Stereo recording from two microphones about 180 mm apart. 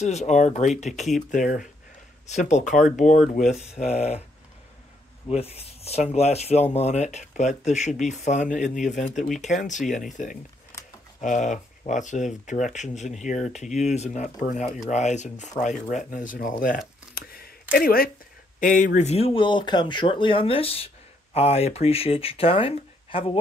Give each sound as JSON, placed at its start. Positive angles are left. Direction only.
{"t": 0.0, "sound": "speech", "side_deg": 40}
{"t": 1.3, "sound": "speech", "side_deg": 50}
{"t": 5.3, "sound": "speech", "side_deg": 35}